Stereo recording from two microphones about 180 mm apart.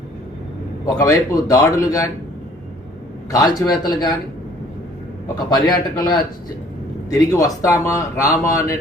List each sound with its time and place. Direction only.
0.9 s a man's voice: 20° left (ahead or behind)
3.3 s a man's voice: 20° left (ahead or behind)
5.5 s a man's voice: 20° left (ahead or behind)